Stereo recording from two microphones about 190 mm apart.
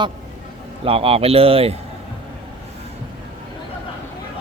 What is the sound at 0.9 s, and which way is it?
Speech, 30° right (ahead or behind).